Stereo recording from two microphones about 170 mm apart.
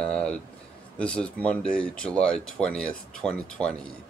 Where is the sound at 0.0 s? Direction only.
5° left (ahead or behind).